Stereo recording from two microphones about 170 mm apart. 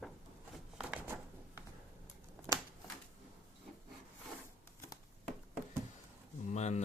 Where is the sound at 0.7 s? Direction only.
5° right (ahead or behind).